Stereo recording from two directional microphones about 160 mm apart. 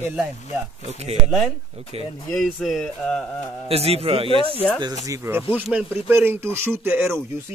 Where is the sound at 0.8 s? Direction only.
40° right (ahead or behind).